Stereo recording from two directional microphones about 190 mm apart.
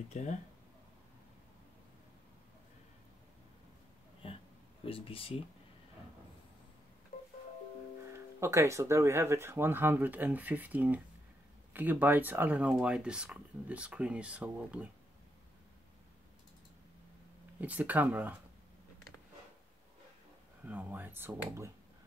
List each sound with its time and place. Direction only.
0.1 s speech: 40° left (ahead or behind)
4.2 s a sound: 30° left (ahead or behind)
4.8 s speech: 30° left (ahead or behind)
8.4 s speech: 15° right (ahead or behind)
17.6 s speech: 10° right (ahead or behind)
20.6 s speech: 10° right (ahead or behind)